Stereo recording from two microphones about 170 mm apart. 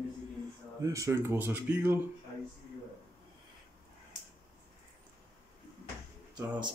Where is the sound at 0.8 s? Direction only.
20° right (ahead or behind).